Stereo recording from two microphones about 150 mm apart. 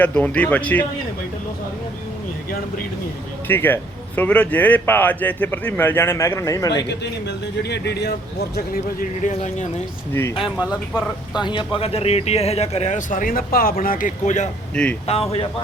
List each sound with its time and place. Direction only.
0.0 s speech: 10° left (ahead or behind)
3.4 s speech: 15° left (ahead or behind)
7.6 s speech: 90° left
10.1 s speech: 15° left (ahead or behind)
10.4 s speech: 5° right (ahead or behind)
11.3 s speech: 30° left (ahead or behind); by 14.5 s 55° left (ahead or behind)
15.0 s speech: 40° left (ahead or behind)